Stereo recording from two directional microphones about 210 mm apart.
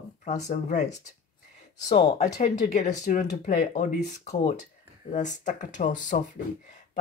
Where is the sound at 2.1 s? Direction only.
35° left (ahead or behind).